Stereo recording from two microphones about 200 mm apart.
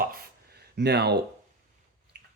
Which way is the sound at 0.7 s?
55° right (ahead or behind).